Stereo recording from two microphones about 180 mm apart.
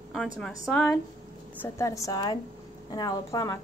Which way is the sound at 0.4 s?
5° left (ahead or behind).